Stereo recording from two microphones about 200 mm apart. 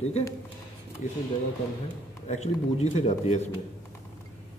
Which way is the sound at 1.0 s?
35° left (ahead or behind).